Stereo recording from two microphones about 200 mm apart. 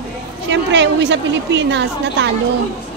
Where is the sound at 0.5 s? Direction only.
60° right (ahead or behind).